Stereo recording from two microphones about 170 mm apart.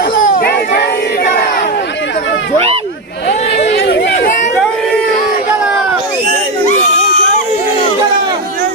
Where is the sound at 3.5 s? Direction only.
70° left (ahead or behind).